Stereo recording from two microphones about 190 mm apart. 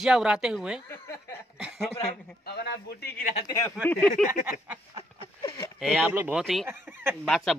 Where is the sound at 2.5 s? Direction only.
55° left (ahead or behind).